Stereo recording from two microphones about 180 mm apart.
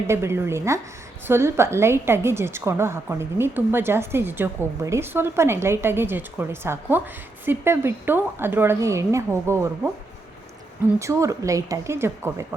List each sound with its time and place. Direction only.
0.1 s a woman's voice: 15° right (ahead or behind)
11.0 s a woman's voice: 15° right (ahead or behind)